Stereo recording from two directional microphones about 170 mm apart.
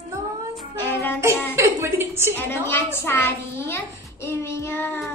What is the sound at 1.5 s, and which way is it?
Speech, 15° right (ahead or behind).